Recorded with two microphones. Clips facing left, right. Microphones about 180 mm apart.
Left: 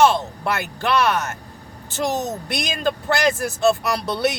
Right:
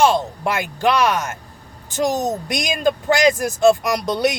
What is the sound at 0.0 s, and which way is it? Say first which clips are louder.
Speech: right 1 dB; 15° right (ahead or behind).